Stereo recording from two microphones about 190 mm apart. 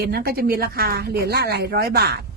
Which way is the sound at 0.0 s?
55° right (ahead or behind).